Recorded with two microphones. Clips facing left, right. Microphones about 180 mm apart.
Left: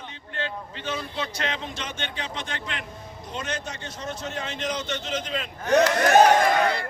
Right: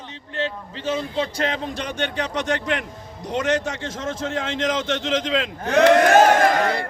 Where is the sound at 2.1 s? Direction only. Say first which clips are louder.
Right 10 dB; 65° right (ahead or behind).